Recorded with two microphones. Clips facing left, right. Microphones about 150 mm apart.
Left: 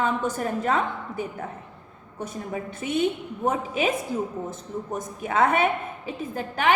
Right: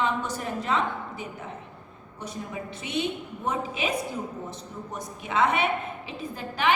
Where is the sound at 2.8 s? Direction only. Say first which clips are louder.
Left 5 dB; 40° left (ahead or behind).